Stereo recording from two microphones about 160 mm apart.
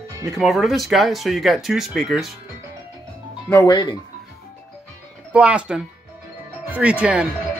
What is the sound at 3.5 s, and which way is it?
Speech, 25° left (ahead or behind).